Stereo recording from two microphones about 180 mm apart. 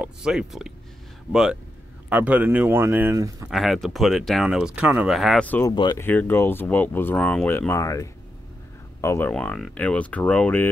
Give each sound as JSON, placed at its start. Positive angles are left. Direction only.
{"t": 0.0, "sound": "speech", "side_deg": -5}
{"t": 3.4, "sound": "speech", "side_deg": 0}
{"t": 5.7, "sound": "speech", "side_deg": 20}
{"t": 6.0, "sound": "speech", "side_deg": 10}